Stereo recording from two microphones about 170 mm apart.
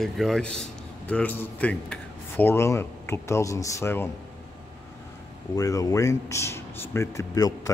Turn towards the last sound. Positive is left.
turn(degrees=20)  # may be behind; listen again after turning